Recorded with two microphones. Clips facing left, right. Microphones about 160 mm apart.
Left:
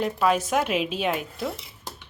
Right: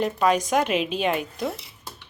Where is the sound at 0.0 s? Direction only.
5° left (ahead or behind).